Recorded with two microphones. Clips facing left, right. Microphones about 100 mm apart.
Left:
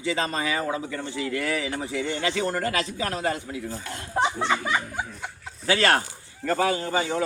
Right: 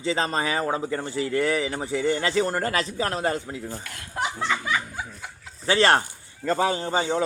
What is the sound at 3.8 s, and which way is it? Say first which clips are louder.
Speech: left 7 dB; 25° left (ahead or behind).